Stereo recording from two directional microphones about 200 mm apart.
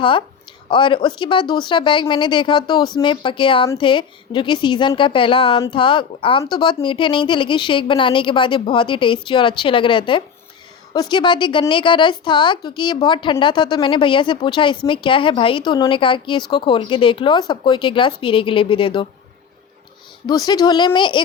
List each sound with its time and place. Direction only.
0.7 s speech: 25° left (ahead or behind)
20.2 s speech: 20° left (ahead or behind)